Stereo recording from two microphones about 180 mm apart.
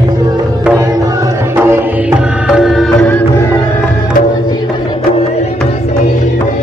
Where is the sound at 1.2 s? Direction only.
10° right (ahead or behind).